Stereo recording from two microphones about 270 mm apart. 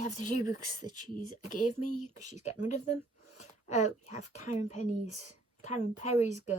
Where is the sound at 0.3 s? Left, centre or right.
Left.